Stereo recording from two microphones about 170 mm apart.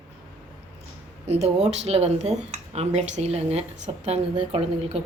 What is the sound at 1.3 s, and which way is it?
A woman's voice, 40° right (ahead or behind).